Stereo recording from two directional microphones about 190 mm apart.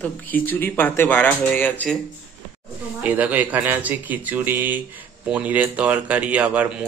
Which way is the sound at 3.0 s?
10° right (ahead or behind).